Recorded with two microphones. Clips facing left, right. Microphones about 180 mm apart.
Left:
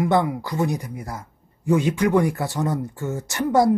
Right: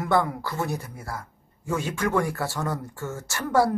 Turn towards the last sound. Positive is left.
turn(degrees=20)  # may be behind; listen again after turning